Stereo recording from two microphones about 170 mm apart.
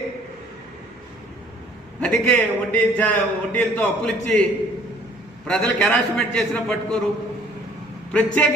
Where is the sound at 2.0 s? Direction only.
5° left (ahead or behind).